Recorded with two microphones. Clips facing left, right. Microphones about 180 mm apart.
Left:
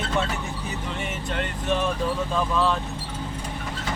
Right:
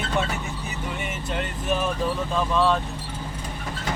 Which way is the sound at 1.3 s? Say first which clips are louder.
Even; 5° right (ahead or behind).